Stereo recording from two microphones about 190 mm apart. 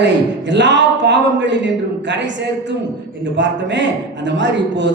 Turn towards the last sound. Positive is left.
turn(degrees=-70)  # may be behind; listen again after turning